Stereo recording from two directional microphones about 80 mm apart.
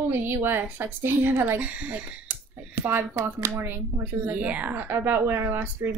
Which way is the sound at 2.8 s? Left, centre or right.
Right.